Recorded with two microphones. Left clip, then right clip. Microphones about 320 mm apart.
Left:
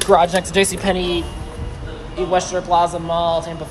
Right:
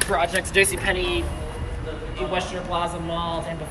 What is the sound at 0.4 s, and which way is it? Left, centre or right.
Speech, centre.